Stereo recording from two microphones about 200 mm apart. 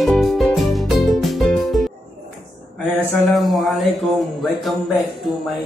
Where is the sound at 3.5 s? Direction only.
Centre (ahead or behind).